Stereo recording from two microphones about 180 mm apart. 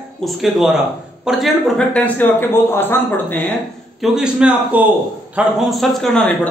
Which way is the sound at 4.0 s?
5° right (ahead or behind).